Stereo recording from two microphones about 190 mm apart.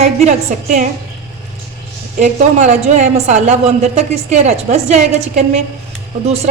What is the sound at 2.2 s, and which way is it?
A man's voice, 40° right (ahead or behind).